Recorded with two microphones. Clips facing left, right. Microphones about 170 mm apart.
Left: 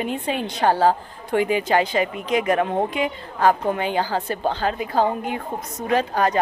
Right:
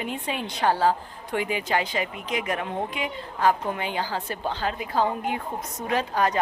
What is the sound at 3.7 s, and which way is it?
Speech, 35° left (ahead or behind).